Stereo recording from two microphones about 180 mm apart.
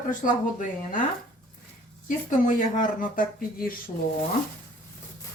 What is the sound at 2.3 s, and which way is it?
A woman's voice, 45° left (ahead or behind).